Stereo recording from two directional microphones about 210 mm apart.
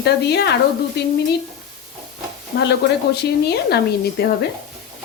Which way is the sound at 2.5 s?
55° left (ahead or behind).